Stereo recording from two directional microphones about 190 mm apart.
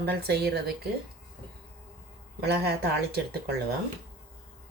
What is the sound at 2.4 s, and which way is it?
Speech, 60° right (ahead or behind).